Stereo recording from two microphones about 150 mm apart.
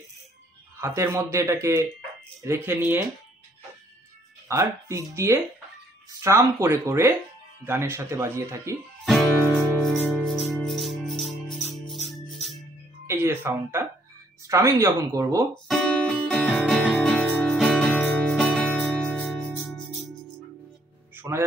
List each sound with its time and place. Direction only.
0.7 s speech: 20° right (ahead or behind)
4.5 s speech: 20° right (ahead or behind)
9.0 s music: centre (ahead or behind)
13.0 s music: 15° right (ahead or behind)
14.5 s speech: 20° right (ahead or behind)
15.5 s music: 5° left (ahead or behind)
21.1 s music: 15° right (ahead or behind)